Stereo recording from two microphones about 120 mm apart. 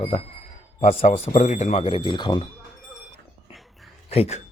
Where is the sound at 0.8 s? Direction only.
75° left (ahead or behind).